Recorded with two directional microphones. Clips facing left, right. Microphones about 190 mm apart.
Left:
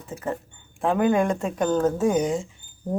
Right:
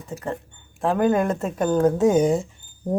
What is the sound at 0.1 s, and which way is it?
A woman's voice, centre (ahead or behind).